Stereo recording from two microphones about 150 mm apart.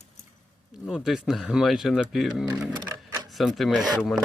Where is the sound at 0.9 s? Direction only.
5° right (ahead or behind).